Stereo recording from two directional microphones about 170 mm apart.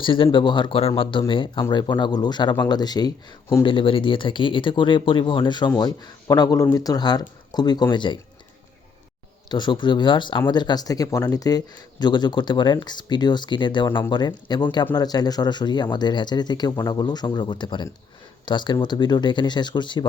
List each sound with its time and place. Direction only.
0.0 s a man's voice: 30° left (ahead or behind)
9.5 s a man's voice: 25° left (ahead or behind)